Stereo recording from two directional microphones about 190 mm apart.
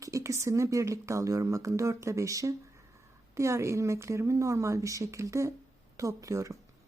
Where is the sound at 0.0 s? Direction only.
15° right (ahead or behind).